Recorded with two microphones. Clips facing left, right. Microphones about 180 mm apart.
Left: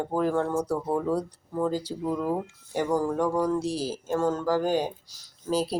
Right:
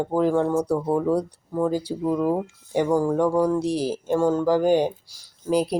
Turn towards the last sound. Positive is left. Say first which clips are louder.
# right 5 dB
turn(degrees=-15)  # may be behind; listen again after turning